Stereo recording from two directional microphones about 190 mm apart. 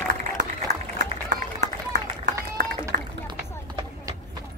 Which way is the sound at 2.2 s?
50° right (ahead or behind).